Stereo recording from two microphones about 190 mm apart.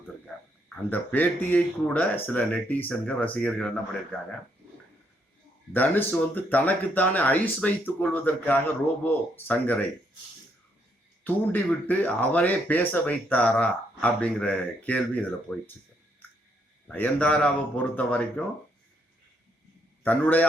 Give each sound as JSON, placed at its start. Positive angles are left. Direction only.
{"t": 0.9, "sound": "speech", "side_deg": 10}
{"t": 5.7, "sound": "speech", "side_deg": 10}
{"t": 11.2, "sound": "speech", "side_deg": 10}
{"t": 16.8, "sound": "speech", "side_deg": 5}
{"t": 20.1, "sound": "speech", "side_deg": 10}